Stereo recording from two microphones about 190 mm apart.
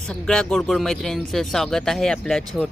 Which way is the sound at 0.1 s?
5° left (ahead or behind).